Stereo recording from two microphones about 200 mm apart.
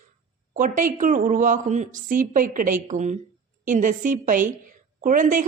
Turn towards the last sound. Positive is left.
turn(degrees=-40)  # may be behind; listen again after turning